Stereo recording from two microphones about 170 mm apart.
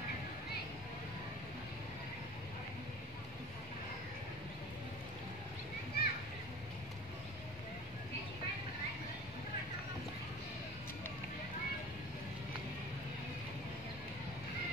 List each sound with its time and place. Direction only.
6.0 s children playing: 65° left (ahead or behind)